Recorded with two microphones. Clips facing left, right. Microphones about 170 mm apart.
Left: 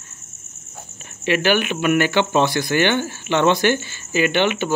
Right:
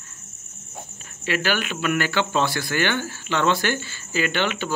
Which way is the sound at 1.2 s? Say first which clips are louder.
Left 6 dB; 20° left (ahead or behind).